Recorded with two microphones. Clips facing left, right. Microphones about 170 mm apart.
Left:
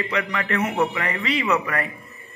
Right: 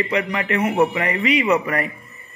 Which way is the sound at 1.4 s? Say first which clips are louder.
Right 4 dB; 25° right (ahead or behind).